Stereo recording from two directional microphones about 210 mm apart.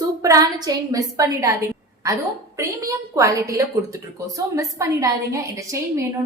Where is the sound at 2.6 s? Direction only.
15° right (ahead or behind).